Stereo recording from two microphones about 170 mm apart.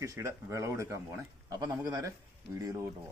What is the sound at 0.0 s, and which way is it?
A man's voice, 20° right (ahead or behind).